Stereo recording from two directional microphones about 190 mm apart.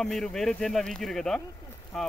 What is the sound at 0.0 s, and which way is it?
Speech, 5° left (ahead or behind).